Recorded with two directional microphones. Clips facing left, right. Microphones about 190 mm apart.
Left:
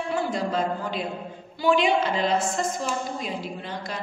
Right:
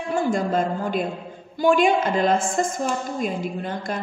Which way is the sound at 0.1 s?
50° right (ahead or behind).